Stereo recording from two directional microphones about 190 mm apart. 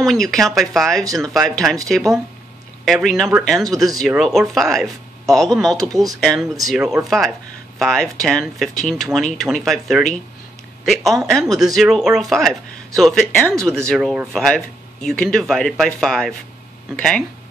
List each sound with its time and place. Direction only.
0.0 s speech: centre (ahead or behind)